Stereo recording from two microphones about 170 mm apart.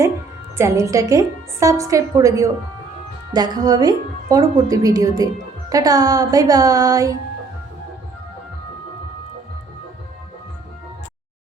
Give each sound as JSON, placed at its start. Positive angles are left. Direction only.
{"t": 0.5, "sound": "a woman's voice", "side_deg": -15}